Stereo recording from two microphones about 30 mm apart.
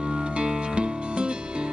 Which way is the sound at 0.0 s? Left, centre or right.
Right.